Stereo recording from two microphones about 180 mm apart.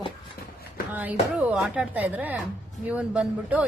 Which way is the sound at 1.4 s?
5° right (ahead or behind).